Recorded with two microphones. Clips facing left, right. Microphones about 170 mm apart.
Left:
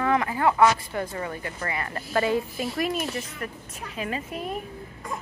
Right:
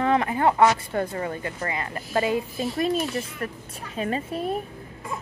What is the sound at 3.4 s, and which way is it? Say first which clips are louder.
Speech: right 2 dB; 35° right (ahead or behind).